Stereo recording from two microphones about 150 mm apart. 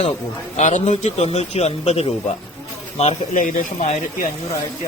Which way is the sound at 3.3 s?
60° left (ahead or behind).